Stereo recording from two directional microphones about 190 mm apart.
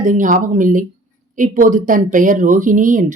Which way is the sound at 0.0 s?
40° right (ahead or behind).